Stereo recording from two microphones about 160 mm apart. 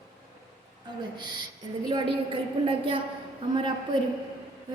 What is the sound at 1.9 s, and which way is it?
A woman's voice, 30° right (ahead or behind).